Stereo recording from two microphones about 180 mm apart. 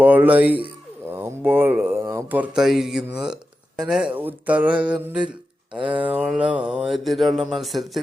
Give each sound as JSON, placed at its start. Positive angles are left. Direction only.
{"t": 0.0, "sound": "speech", "side_deg": -10}
{"t": 5.8, "sound": "a sound", "side_deg": -30}
{"t": 6.1, "sound": "speech", "side_deg": -5}